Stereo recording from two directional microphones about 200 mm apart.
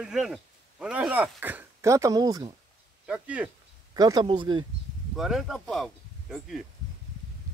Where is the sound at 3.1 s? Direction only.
5° right (ahead or behind).